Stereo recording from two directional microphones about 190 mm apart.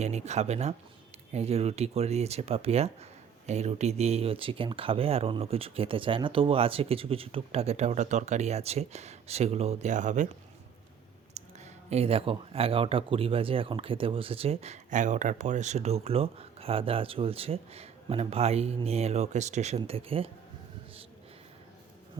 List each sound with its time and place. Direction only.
0.0 s speech: 35° right (ahead or behind)
11.3 s speech: 35° right (ahead or behind)